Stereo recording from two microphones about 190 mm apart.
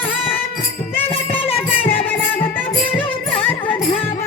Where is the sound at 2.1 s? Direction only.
10° left (ahead or behind).